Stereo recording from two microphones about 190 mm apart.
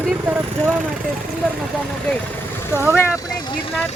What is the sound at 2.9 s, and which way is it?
Speech, 10° left (ahead or behind).